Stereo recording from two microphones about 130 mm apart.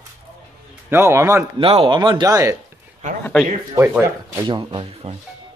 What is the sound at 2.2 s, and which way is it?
Speech, 25° right (ahead or behind).